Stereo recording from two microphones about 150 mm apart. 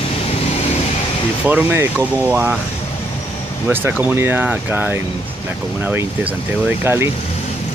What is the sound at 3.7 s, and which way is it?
Speech, 15° right (ahead or behind).